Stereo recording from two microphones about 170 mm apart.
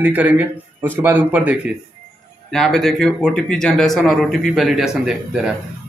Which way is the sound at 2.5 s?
Centre (ahead or behind).